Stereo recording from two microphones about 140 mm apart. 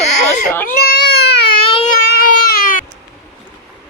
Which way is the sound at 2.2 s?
90° left.